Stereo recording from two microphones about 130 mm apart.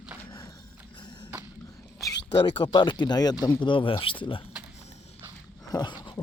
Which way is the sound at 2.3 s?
40° left (ahead or behind).